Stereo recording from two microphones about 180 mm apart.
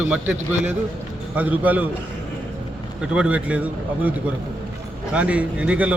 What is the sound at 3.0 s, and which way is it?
Speech, 5° right (ahead or behind).